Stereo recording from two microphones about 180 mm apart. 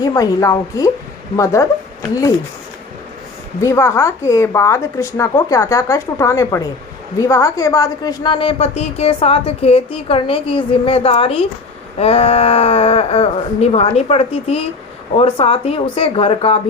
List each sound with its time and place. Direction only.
0.0 s a woman's voice: 20° left (ahead or behind)
3.6 s a woman's voice: 15° left (ahead or behind); by 16.6 s 30° left (ahead or behind)